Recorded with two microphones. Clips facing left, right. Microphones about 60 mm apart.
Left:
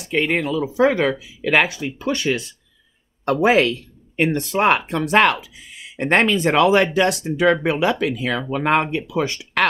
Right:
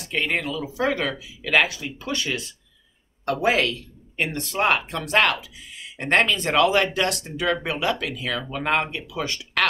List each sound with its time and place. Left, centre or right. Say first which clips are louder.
0.0 s speech: left 5 dB; centre